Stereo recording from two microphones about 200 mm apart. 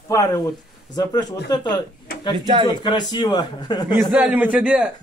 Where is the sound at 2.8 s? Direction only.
20° left (ahead or behind).